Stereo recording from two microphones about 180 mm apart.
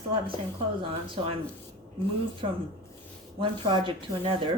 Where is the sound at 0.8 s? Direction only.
30° right (ahead or behind).